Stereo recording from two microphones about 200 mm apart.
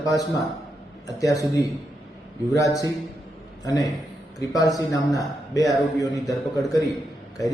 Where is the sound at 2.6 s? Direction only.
15° left (ahead or behind).